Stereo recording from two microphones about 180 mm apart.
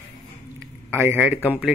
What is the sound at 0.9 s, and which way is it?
Speech, 10° right (ahead or behind).